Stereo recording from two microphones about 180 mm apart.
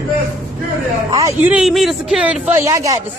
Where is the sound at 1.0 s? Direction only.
20° right (ahead or behind).